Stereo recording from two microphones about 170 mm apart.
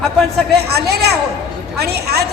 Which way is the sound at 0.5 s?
70° right (ahead or behind).